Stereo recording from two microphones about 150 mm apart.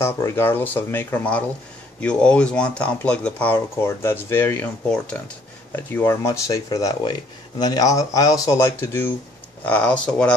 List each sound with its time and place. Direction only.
0.0 s speech: 15° left (ahead or behind)